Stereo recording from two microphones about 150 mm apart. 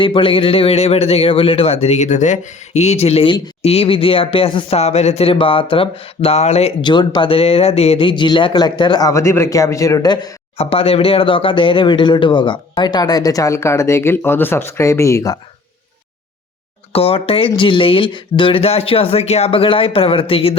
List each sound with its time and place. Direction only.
0.0 s a man's voice: 35° left (ahead or behind)
6.8 s speech: 30° left (ahead or behind)
10.6 s speech: 40° left (ahead or behind); by 15.4 s 20° left (ahead or behind)
16.9 s a man's voice: 40° left (ahead or behind)